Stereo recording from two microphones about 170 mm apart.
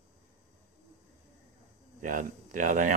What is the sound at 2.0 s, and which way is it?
Speech, 50° right (ahead or behind).